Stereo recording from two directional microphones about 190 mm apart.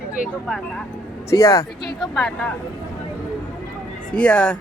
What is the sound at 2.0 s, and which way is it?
Speech, 5° left (ahead or behind).